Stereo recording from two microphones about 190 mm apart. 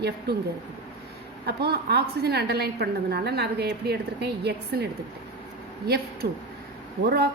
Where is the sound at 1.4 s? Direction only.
55° right (ahead or behind).